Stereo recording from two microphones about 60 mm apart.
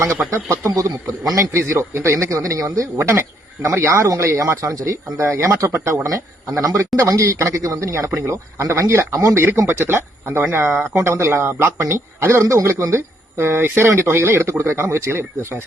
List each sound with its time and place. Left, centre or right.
0.2 s speech: right
0.6 s a man's voice: right
1.9 s speech: right
2.1 s a man's voice: right
5.2 s a man's voice: right
6.7 s a man's voice: right
9.1 s a man's voice: right
9.6 s speech: right
12.6 s speech: right
13.8 s speech: right